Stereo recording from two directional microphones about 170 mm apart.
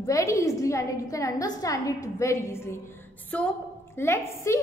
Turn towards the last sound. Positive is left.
turn(degrees=15)  # may be behind; listen again after turning